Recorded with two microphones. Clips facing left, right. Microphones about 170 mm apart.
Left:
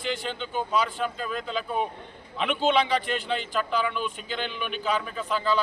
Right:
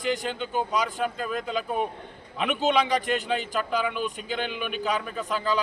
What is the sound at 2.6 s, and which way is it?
Speech, 40° right (ahead or behind).